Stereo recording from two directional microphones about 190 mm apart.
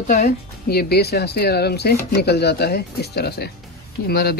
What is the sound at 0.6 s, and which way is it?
Speech, 55° left (ahead or behind).